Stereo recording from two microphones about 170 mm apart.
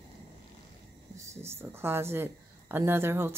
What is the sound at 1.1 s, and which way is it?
Speech, 15° right (ahead or behind).